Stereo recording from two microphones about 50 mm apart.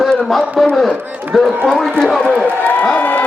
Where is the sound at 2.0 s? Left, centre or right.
Centre.